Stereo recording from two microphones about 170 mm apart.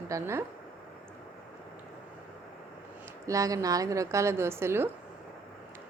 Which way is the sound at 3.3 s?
20° right (ahead or behind).